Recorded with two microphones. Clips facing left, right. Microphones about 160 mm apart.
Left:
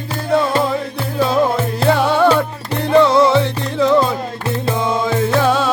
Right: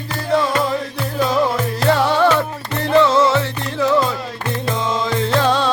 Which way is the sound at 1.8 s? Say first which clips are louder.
Left 2 dB; 15° left (ahead or behind).